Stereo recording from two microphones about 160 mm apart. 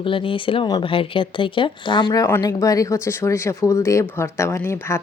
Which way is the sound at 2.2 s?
20° left (ahead or behind).